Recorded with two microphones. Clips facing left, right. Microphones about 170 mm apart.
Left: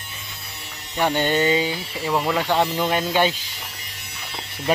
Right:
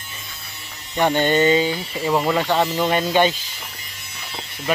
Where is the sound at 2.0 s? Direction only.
Centre (ahead or behind).